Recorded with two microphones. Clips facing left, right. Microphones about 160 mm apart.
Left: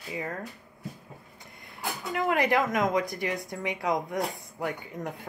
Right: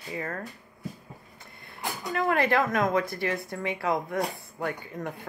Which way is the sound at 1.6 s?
15° left (ahead or behind).